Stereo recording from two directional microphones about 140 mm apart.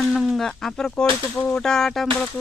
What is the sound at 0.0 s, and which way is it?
Speech, centre (ahead or behind).